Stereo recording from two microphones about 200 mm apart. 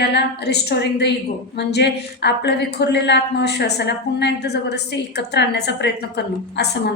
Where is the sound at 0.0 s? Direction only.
55° left (ahead or behind).